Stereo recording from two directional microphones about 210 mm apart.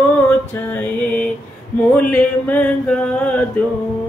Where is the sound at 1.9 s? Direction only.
5° left (ahead or behind).